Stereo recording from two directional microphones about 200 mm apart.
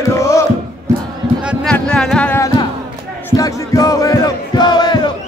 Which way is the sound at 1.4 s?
5° left (ahead or behind).